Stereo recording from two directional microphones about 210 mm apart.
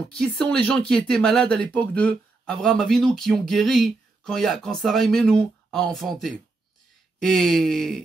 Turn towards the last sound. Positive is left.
turn(degrees=0)  # may be behind; listen again after turning